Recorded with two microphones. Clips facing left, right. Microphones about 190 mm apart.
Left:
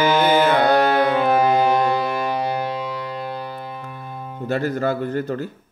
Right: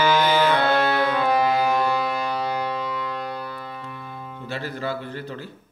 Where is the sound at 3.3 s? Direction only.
25° left (ahead or behind).